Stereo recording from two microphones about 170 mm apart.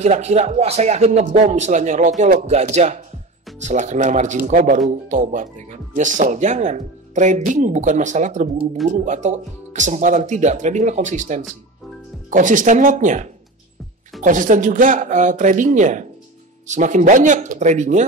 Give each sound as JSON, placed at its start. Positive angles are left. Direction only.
{"t": 0.0, "sound": "speech", "side_deg": -40}